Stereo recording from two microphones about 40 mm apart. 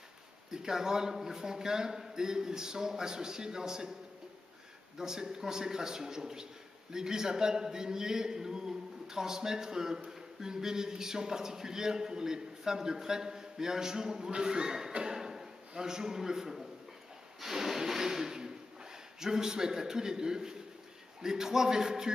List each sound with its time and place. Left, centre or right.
0.5 s a man's voice: centre
4.9 s a man's voice: centre
15.1 s a sound: centre
19.1 s a man's voice: centre